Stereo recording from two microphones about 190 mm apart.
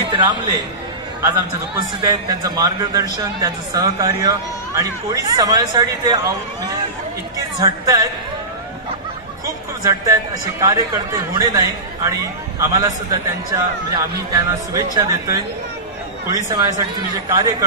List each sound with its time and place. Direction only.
0.0 s a man's voice: 25° right (ahead or behind)
2.0 s a man's voice: 20° right (ahead or behind)
9.8 s a man's voice: 15° right (ahead or behind)